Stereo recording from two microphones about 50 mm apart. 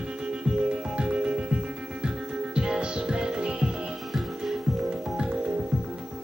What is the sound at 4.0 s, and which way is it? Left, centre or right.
Music, centre.